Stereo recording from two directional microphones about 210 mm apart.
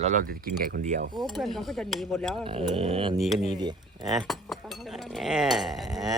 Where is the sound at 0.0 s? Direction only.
40° right (ahead or behind).